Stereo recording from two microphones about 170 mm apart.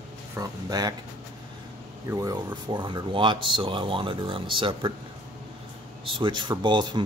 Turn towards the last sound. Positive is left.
turn(degrees=-25)  # may be behind; listen again after turning